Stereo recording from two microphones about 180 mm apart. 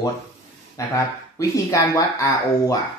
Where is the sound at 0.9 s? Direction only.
15° left (ahead or behind).